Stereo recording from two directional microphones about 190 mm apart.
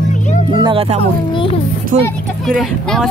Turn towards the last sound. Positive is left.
turn(degrees=0)  # may be behind; listen again after turning